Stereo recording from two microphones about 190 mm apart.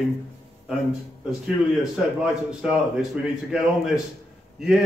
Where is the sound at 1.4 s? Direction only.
Centre (ahead or behind).